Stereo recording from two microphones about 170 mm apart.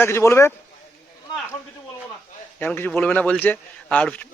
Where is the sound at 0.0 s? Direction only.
15° left (ahead or behind).